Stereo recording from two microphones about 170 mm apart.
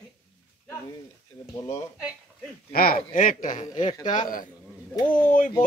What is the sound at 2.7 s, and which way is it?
Speech, 60° left (ahead or behind).